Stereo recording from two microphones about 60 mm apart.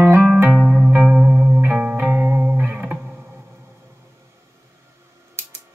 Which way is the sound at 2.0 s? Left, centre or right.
Right.